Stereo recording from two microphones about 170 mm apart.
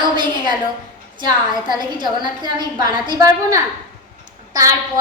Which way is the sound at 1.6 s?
25° right (ahead or behind).